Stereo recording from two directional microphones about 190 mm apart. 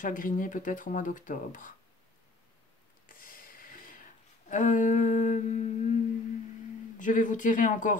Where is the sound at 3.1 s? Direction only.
50° left (ahead or behind).